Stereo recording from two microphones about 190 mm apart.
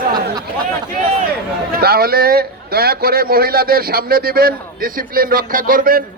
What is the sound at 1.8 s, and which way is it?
A man's voice, 55° right (ahead or behind).